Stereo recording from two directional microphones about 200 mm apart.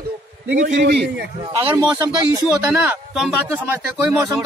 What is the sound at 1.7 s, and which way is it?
A man's voice, 15° right (ahead or behind).